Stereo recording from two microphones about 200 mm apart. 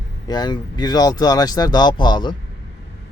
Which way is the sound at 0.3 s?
20° left (ahead or behind).